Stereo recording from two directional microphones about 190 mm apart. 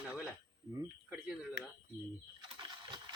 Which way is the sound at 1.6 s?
70° right (ahead or behind).